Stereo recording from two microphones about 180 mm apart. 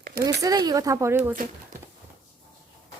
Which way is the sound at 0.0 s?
60° right (ahead or behind).